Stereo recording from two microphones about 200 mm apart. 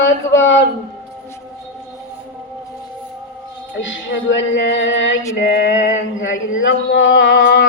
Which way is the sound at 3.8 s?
65° left (ahead or behind).